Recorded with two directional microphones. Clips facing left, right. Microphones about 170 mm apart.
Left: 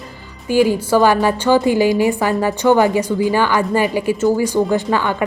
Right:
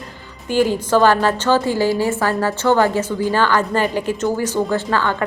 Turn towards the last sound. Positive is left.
turn(degrees=15)  # may be behind; listen again after turning